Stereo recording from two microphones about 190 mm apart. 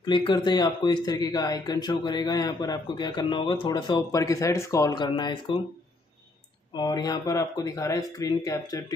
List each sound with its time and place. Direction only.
0.0 s speech: 25° left (ahead or behind)
6.7 s speech: 20° left (ahead or behind)